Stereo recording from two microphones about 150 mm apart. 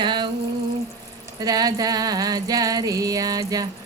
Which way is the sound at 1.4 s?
25° right (ahead or behind).